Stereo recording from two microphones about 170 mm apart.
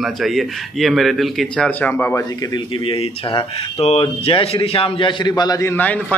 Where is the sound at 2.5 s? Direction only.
30° left (ahead or behind).